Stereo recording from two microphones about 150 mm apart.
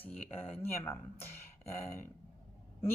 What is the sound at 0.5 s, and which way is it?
Speech, 15° left (ahead or behind).